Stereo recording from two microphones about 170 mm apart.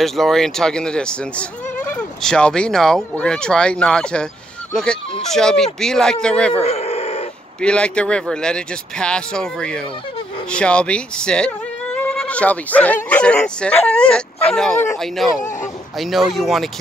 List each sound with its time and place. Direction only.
0.0 s speech: centre (ahead or behind)
6.6 s a sound: 35° left (ahead or behind)
7.6 s speech: 5° left (ahead or behind)